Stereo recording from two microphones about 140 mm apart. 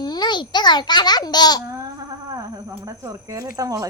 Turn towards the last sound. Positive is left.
turn(degrees=-25)  # may be behind; listen again after turning